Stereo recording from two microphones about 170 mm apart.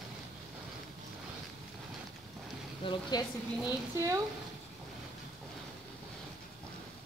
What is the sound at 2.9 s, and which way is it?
Speech, 25° left (ahead or behind).